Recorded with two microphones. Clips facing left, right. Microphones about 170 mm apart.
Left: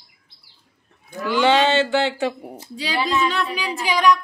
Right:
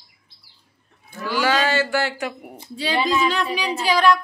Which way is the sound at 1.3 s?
25° left (ahead or behind).